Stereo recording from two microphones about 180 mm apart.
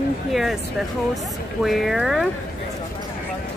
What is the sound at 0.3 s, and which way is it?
Speech, centre (ahead or behind).